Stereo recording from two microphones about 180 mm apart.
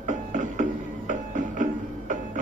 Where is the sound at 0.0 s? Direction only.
45° right (ahead or behind).